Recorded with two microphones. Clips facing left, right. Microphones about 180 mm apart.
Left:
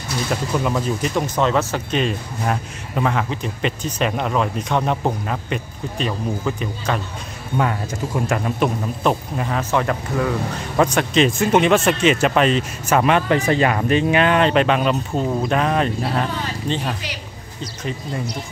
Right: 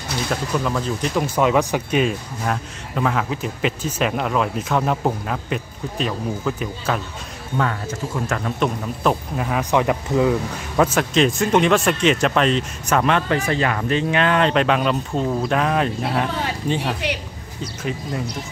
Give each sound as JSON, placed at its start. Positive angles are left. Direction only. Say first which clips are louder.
{"t": 0.3, "sound": "speech", "louder": "left 2 dB", "side_deg": 10}
{"t": 1.2, "sound": "speech", "louder": "right 4 dB", "side_deg": -10}
{"t": 2.4, "sound": "a man's voice", "louder": "left 1 dB", "side_deg": 5}
{"t": 7.5, "sound": "speech", "louder": "left 2 dB", "side_deg": 15}
{"t": 9.0, "sound": "a man's voice", "louder": "even", "side_deg": 0}
{"t": 9.6, "sound": "speech", "louder": "right 2 dB", "side_deg": -15}
{"t": 10.8, "sound": "a man's voice", "louder": "left 1 dB", "side_deg": 0}
{"t": 13.3, "sound": "a man's voice", "louder": "left 3 dB", "side_deg": 20}